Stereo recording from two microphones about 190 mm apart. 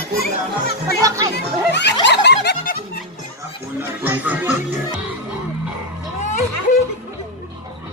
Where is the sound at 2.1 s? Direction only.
60° left (ahead or behind).